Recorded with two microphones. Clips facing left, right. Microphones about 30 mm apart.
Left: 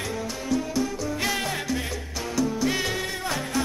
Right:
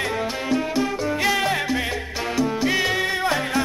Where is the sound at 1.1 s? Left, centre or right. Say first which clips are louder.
Right 7 dB; right.